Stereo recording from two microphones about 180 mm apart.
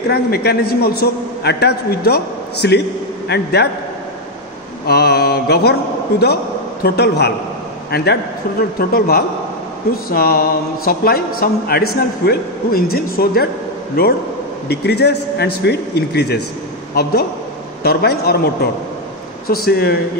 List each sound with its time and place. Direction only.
0.1 s a man's voice: 65° left (ahead or behind)
4.8 s mantra: 65° left (ahead or behind)
6.8 s a man's voice: 65° left (ahead or behind)